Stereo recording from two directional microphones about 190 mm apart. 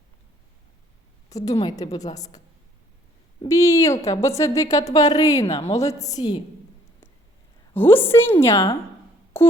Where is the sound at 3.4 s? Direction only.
15° left (ahead or behind).